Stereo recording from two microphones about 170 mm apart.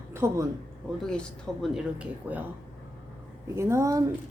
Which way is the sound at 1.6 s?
5° right (ahead or behind).